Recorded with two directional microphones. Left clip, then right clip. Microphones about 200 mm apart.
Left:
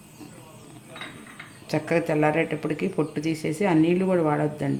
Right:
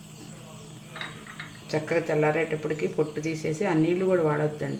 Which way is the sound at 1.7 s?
35° left (ahead or behind).